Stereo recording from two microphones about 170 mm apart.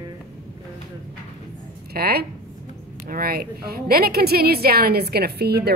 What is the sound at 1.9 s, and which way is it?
A woman's voice, 65° right (ahead or behind).